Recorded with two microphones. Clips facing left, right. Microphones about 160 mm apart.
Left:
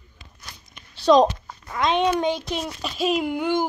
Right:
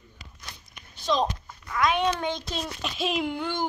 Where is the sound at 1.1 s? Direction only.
45° left (ahead or behind).